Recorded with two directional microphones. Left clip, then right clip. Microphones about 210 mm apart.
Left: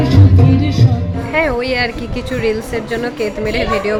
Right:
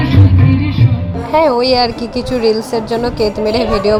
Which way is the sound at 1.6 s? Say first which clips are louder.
Right 5 dB; 10° right (ahead or behind).